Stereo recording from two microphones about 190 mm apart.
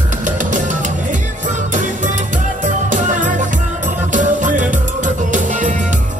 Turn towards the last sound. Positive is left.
turn(degrees=-40)  # may be behind; listen again after turning